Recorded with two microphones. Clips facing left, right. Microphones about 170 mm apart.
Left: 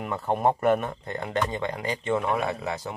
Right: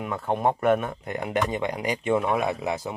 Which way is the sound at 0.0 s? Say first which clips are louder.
Even; centre (ahead or behind).